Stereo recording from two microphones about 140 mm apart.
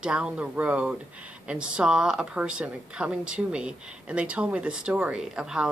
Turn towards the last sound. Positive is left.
turn(degrees=-5)  # may be behind; listen again after turning